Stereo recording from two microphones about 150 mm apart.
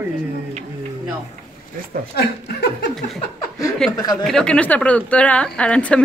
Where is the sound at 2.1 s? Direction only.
90° left.